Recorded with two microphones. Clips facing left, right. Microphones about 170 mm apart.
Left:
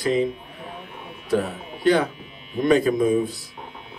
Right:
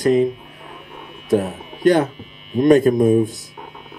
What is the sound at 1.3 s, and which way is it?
Speech, 45° right (ahead or behind).